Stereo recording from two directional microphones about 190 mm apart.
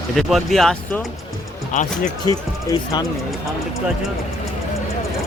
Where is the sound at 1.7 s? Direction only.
40° left (ahead or behind).